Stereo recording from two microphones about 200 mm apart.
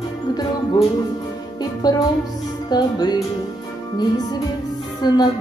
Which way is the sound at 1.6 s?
20° left (ahead or behind).